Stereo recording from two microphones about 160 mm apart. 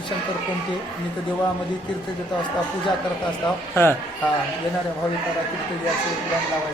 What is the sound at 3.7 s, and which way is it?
Speech, 15° left (ahead or behind).